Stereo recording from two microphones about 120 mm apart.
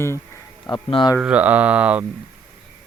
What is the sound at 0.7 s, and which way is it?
Speech, 40° left (ahead or behind).